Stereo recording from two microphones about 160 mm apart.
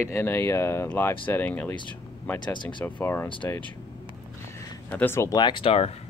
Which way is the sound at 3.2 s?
30° left (ahead or behind).